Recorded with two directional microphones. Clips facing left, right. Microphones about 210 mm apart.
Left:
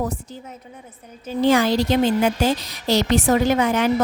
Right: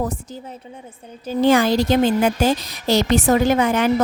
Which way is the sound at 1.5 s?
50° right (ahead or behind).